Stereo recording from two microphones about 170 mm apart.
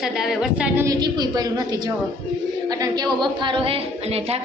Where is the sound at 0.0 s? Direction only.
Centre (ahead or behind).